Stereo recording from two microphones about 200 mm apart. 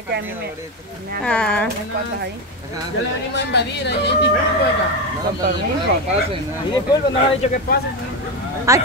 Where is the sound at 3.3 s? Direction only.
60° left (ahead or behind).